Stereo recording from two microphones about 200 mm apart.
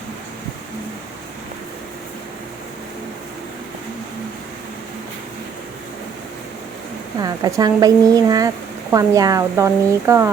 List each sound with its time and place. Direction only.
7.2 s speech: 20° right (ahead or behind)